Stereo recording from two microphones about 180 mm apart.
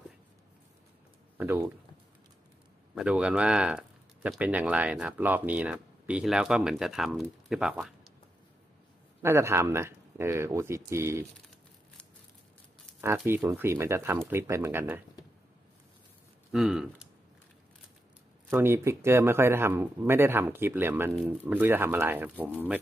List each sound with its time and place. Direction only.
1.4 s speech: 10° right (ahead or behind)
2.9 s speech: 5° right (ahead or behind)
9.2 s speech: 15° right (ahead or behind)
13.0 s speech: 15° right (ahead or behind)
16.5 s speech: 5° right (ahead or behind)
18.5 s speech: 15° right (ahead or behind)